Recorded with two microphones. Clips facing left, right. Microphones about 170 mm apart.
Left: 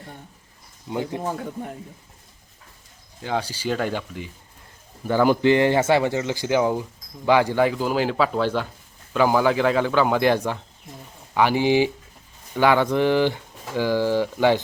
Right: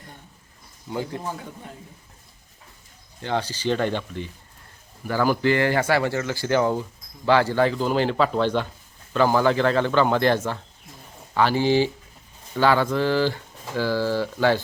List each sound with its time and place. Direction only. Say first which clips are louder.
0.9 s speech: left 2 dB; 20° left (ahead or behind)
1.3 s speech: left 5 dB; 55° left (ahead or behind)
3.2 s speech: even; 10° left (ahead or behind)
5.0 s speech: left 3 dB; 20° left (ahead or behind)